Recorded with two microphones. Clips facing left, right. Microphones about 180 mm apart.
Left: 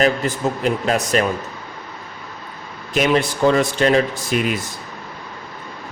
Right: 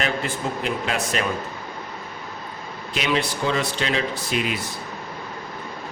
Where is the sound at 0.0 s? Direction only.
40° left (ahead or behind).